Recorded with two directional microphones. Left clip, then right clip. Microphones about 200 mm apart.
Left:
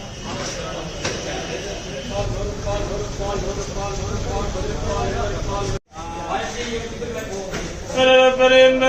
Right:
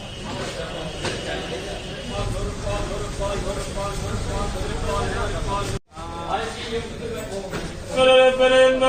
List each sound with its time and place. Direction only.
7.9 s mantra: 15° right (ahead or behind)